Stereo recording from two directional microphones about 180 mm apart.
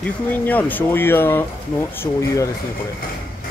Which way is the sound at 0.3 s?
10° left (ahead or behind).